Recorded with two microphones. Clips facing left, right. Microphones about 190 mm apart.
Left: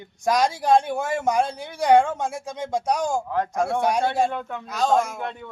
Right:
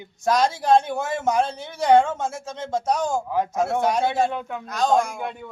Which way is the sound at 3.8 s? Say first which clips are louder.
Even; 10° left (ahead or behind).